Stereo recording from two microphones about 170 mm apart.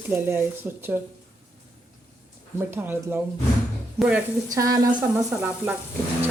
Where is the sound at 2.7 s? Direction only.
10° right (ahead or behind).